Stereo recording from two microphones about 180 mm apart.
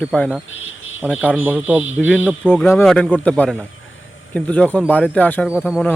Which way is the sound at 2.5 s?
10° left (ahead or behind).